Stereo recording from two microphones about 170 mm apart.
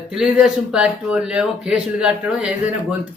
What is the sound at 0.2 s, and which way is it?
Speech, 5° right (ahead or behind).